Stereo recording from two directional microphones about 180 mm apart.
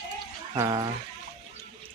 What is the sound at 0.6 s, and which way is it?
Speech, 20° right (ahead or behind).